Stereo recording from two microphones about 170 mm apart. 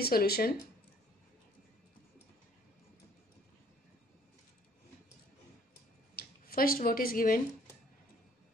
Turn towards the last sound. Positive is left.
turn(degrees=60)  # may be behind; listen again after turning